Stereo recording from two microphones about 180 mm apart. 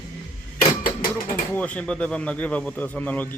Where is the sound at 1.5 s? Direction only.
5° left (ahead or behind).